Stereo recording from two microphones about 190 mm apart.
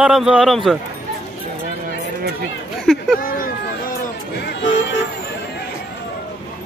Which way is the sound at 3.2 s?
50° left (ahead or behind).